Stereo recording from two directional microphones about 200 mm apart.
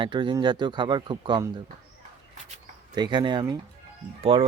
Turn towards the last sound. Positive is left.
turn(degrees=-25)  # may be behind; listen again after turning